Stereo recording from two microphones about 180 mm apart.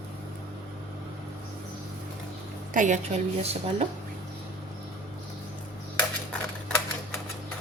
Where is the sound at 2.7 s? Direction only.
40° right (ahead or behind).